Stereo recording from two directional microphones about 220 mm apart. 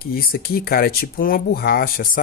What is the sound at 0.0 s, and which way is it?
Speech, 45° left (ahead or behind).